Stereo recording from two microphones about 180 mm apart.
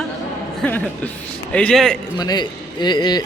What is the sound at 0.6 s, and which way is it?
A man's voice, 10° left (ahead or behind).